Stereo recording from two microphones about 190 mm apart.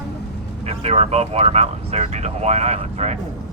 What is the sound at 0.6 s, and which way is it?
Speech, 35° right (ahead or behind).